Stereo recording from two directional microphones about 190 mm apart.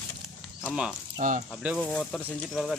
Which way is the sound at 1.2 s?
40° right (ahead or behind).